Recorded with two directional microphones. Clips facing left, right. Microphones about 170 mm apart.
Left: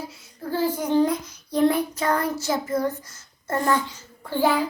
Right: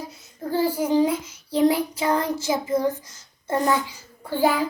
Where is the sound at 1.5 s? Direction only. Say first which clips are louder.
Right 1 dB; 10° right (ahead or behind).